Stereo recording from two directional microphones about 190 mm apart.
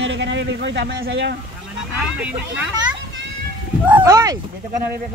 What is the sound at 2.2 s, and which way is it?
Speech, 5° right (ahead or behind).